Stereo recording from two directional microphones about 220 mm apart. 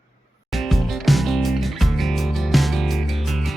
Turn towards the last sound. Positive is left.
turn(degrees=0)  # may be behind; listen again after turning